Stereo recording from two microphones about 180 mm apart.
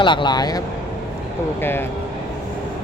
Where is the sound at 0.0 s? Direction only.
25° left (ahead or behind).